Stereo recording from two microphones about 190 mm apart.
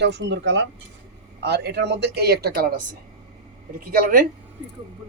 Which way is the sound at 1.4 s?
60° right (ahead or behind).